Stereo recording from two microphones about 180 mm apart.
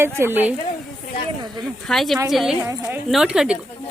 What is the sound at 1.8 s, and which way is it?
A woman's voice, centre (ahead or behind).